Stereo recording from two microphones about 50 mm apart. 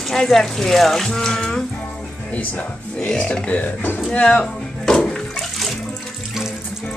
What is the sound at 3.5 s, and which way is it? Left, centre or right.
Speech, left.